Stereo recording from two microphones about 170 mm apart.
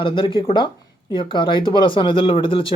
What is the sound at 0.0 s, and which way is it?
Speech, 30° left (ahead or behind).